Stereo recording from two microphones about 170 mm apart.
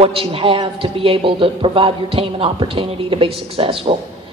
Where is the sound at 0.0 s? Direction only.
35° right (ahead or behind).